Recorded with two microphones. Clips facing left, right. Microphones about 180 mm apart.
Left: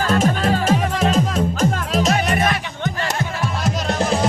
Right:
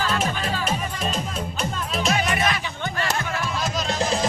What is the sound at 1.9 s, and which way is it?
Music, 45° left (ahead or behind).